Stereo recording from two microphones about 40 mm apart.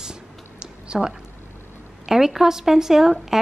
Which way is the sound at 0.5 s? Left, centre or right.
Right.